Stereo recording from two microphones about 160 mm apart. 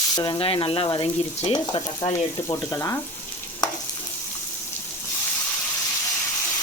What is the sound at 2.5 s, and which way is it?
Sizzle, 20° left (ahead or behind).